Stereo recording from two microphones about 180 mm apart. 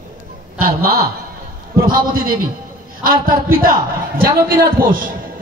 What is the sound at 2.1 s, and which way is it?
Speech, 55° right (ahead or behind).